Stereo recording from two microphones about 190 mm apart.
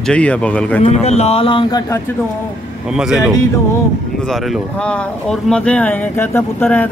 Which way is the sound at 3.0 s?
5° right (ahead or behind).